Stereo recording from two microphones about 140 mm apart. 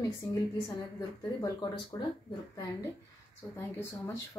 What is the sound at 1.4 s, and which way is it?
Speech, 20° left (ahead or behind).